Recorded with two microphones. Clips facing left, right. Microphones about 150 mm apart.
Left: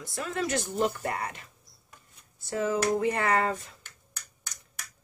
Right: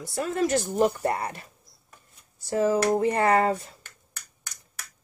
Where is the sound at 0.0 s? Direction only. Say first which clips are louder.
Right 6 dB; 40° right (ahead or behind).